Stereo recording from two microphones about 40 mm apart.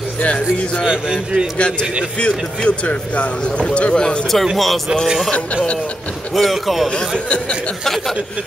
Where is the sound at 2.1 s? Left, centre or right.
Left.